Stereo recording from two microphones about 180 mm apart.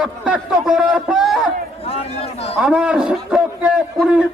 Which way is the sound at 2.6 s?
5° right (ahead or behind).